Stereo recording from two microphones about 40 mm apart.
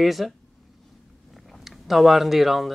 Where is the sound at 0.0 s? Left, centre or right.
Centre.